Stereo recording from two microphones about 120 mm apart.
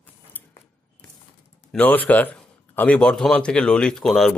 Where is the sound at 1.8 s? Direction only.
15° left (ahead or behind).